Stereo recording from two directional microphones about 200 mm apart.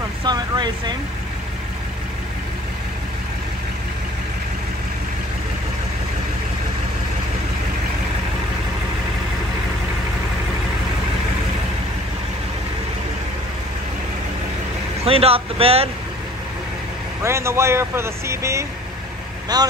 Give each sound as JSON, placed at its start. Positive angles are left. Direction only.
{"t": 0.2, "sound": "speech", "side_deg": -20}
{"t": 15.0, "sound": "speech", "side_deg": -30}
{"t": 17.2, "sound": "speech", "side_deg": -15}